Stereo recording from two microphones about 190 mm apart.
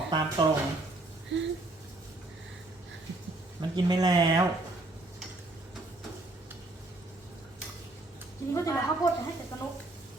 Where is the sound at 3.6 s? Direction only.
20° right (ahead or behind).